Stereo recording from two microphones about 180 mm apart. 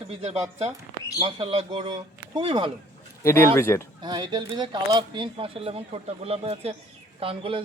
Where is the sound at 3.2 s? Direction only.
15° left (ahead or behind).